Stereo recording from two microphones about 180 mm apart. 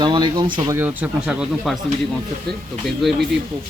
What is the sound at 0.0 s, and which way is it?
Speech, 25° right (ahead or behind).